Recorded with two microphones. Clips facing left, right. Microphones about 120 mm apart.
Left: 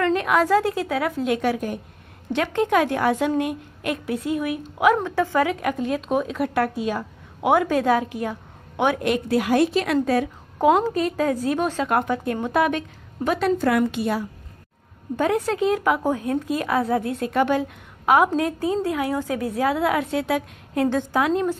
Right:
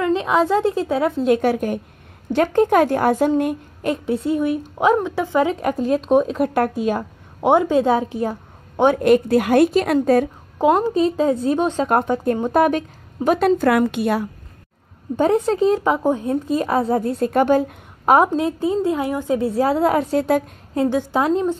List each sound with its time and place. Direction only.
0.0 s a woman's voice: 25° right (ahead or behind)
1.3 s a woman's voice: 45° right (ahead or behind)
3.9 s a woman's voice: 30° right (ahead or behind)
4.9 s a woman's voice: 15° right (ahead or behind)
5.5 s a woman's voice: 35° right (ahead or behind)
7.4 s a woman's voice: 20° right (ahead or behind); by 10.3 s 45° right (ahead or behind)
10.6 s a woman's voice: 10° right (ahead or behind)
11.0 s a woman's voice: 25° right (ahead or behind)
13.6 s a woman's voice: 60° right (ahead or behind)
15.1 s a woman's voice: 25° right (ahead or behind)
18.3 s a woman's voice: 20° right (ahead or behind); by 20.4 s 40° right (ahead or behind)
21.2 s a woman's voice: 25° right (ahead or behind)